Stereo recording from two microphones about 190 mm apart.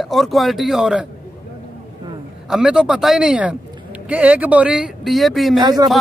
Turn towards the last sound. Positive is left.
turn(degrees=-20)  # may be behind; listen again after turning